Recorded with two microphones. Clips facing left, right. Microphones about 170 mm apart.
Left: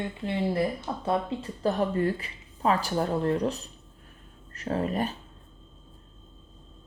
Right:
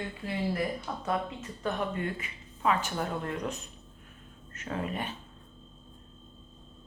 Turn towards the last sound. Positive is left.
turn(degrees=40)  # may be behind; listen again after turning